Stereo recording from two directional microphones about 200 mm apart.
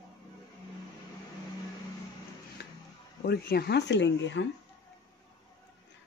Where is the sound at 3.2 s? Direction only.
50° left (ahead or behind).